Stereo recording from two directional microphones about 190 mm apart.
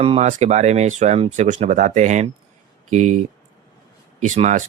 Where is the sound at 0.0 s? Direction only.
35° right (ahead or behind).